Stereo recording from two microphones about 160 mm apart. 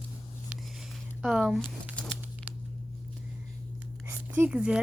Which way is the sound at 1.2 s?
Centre (ahead or behind).